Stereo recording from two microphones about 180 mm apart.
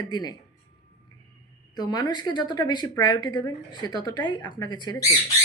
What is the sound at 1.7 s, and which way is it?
A woman's voice, 20° left (ahead or behind).